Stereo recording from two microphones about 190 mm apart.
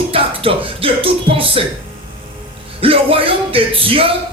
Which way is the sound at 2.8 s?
30° right (ahead or behind).